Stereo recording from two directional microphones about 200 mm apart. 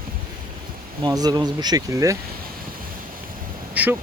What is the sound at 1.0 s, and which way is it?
Speech, 20° right (ahead or behind).